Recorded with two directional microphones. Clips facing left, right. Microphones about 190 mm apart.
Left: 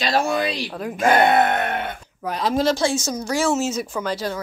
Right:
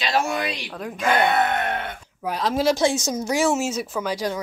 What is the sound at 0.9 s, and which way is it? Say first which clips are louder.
Speech: left 4 dB; 45° left (ahead or behind).